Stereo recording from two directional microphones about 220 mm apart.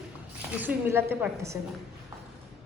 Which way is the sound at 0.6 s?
10° right (ahead or behind).